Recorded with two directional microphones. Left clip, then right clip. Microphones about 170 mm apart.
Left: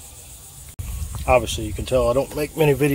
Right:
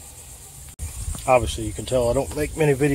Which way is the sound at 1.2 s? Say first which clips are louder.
Left 1 dB; 20° left (ahead or behind).